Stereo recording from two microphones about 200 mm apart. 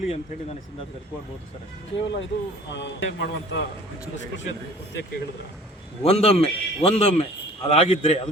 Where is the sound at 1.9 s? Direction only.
65° left (ahead or behind).